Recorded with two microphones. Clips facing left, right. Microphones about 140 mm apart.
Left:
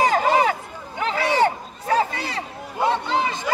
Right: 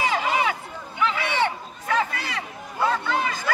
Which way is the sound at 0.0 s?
45° left (ahead or behind).